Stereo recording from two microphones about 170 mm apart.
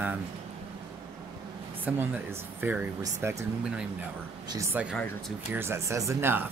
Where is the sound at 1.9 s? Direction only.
5° right (ahead or behind).